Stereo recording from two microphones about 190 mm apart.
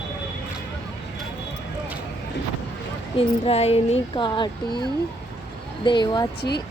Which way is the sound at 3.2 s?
30° left (ahead or behind).